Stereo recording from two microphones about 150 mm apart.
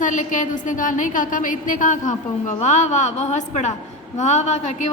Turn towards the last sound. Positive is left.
turn(degrees=50)  # may be behind; listen again after turning